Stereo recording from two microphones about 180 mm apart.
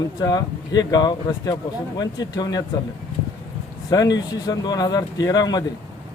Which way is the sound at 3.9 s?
20° left (ahead or behind).